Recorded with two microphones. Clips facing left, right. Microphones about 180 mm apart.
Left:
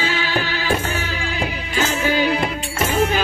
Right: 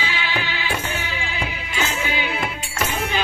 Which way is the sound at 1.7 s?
45° left (ahead or behind).